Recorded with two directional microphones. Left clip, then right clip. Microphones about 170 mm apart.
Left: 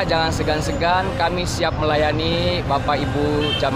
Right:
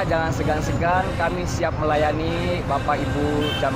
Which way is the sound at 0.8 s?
30° left (ahead or behind).